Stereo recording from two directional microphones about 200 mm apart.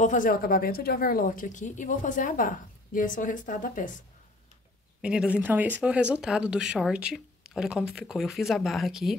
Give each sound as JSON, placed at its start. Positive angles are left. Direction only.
{"t": 0.0, "sound": "a woman's voice", "side_deg": 40}
{"t": 5.0, "sound": "speech", "side_deg": -5}